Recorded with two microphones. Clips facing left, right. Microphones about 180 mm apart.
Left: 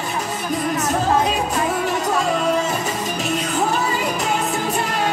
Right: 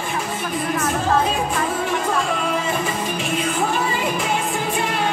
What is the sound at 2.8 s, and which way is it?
Music, 40° left (ahead or behind).